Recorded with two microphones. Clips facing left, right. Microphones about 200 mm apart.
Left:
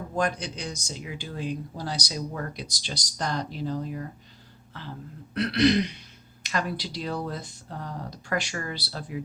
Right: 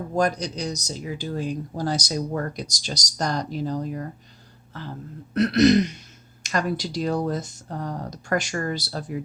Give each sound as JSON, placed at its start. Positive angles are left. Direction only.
{"t": 0.1, "sound": "speech", "side_deg": -40}
{"t": 5.3, "sound": "speech", "side_deg": -45}